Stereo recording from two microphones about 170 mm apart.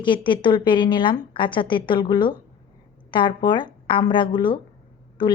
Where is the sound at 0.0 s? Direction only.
30° left (ahead or behind).